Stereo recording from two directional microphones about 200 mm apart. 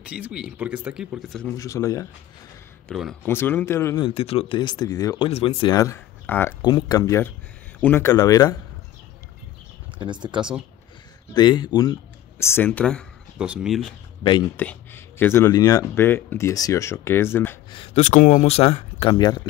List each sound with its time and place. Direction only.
0.0 s speech: 5° right (ahead or behind)
1.6 s speech: 15° left (ahead or behind)
2.9 s speech: centre (ahead or behind)
4.0 s speech: 30° left (ahead or behind)
9.9 s speech: 25° right (ahead or behind)
11.3 s speech: 20° left (ahead or behind)
17.6 s speech: 30° left (ahead or behind)